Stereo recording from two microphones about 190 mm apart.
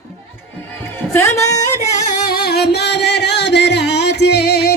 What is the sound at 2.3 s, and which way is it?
Music, 55° left (ahead or behind).